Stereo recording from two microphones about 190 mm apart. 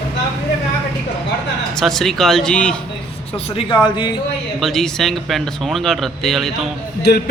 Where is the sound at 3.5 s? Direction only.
25° left (ahead or behind).